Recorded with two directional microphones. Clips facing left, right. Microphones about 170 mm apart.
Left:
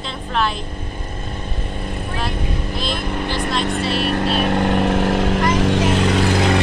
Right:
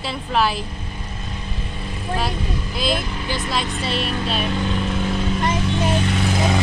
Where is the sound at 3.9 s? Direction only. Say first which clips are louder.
Left 3 dB; 60° left (ahead or behind).